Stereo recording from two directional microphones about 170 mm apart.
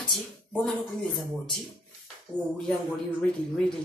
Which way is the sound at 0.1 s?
5° left (ahead or behind).